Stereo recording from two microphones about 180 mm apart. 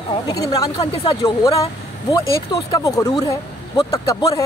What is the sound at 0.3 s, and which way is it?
Speech, 20° left (ahead or behind).